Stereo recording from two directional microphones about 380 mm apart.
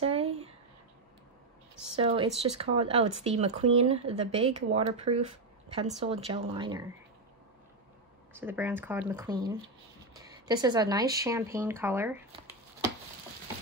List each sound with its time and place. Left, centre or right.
0.0 s a sound: centre
2.0 s speech: centre
8.3 s speech: centre